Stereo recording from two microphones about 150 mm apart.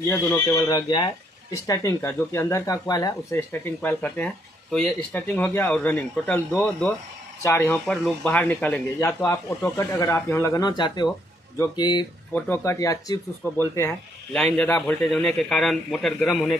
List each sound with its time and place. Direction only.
0.1 s speech: 15° left (ahead or behind)
0.6 s speech: 25° left (ahead or behind)
7.8 s speech: 5° left (ahead or behind); by 12.1 s 30° left (ahead or behind)
12.4 s speech: 15° left (ahead or behind)
14.3 s a man's voice: 10° left (ahead or behind)